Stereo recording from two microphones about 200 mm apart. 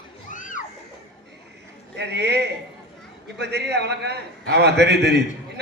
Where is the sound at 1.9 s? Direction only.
55° right (ahead or behind).